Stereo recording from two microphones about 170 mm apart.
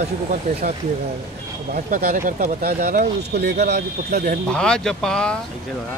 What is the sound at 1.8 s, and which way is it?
Speech, 50° right (ahead or behind).